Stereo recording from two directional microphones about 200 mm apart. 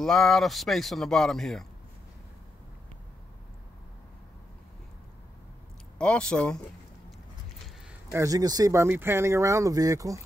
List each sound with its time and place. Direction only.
0.0 s speech: centre (ahead or behind)
5.9 s speech: 5° left (ahead or behind)
8.1 s speech: 15° right (ahead or behind)